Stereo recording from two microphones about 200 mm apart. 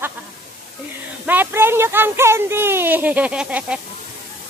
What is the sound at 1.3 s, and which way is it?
Speech, 10° right (ahead or behind).